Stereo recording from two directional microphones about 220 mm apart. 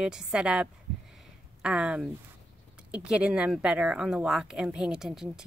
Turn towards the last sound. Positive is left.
turn(degrees=-5)  # may be behind; listen again after turning